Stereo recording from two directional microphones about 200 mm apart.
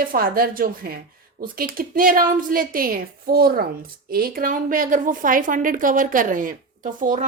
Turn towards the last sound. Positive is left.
turn(degrees=-40)  # may be behind; listen again after turning